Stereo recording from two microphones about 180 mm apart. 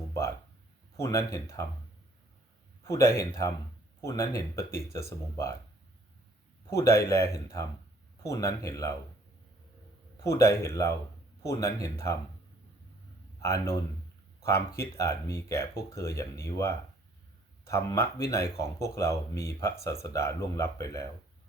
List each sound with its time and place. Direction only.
0.9 s speech: 15° left (ahead or behind)
2.8 s speech: 15° left (ahead or behind)
6.7 s speech: 15° left (ahead or behind)
10.2 s speech: 15° left (ahead or behind)
13.4 s speech: 15° left (ahead or behind)